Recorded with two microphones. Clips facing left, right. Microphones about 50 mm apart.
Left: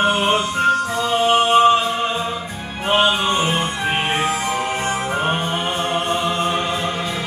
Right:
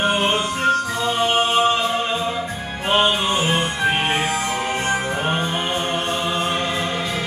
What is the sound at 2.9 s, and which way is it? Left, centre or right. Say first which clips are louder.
Music: left 1 dB; left.